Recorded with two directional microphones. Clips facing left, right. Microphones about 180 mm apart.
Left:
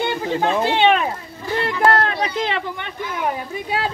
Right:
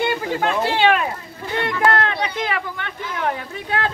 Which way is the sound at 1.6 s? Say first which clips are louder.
Left 1 dB; 35° left (ahead or behind).